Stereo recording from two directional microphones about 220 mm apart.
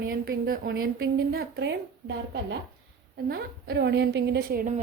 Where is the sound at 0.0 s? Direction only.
45° right (ahead or behind).